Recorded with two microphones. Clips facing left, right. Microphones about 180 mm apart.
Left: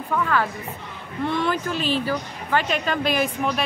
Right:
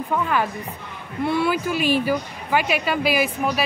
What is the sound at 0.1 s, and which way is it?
Speech, 15° right (ahead or behind).